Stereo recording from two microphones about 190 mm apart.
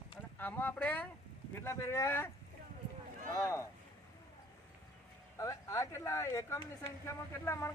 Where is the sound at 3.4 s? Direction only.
15° left (ahead or behind).